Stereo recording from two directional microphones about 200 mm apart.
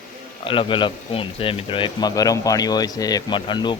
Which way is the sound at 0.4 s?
25° left (ahead or behind).